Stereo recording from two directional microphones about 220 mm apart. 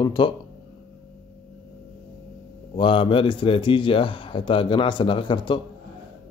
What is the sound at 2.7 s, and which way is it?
A man's voice, 25° left (ahead or behind).